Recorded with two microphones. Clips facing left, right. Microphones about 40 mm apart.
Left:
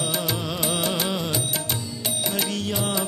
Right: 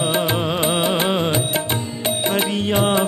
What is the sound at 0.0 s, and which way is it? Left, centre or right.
Music, right.